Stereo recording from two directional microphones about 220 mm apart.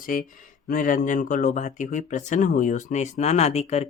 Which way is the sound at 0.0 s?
40° left (ahead or behind).